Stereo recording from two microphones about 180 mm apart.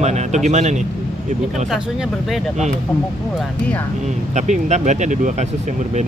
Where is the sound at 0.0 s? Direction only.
40° right (ahead or behind).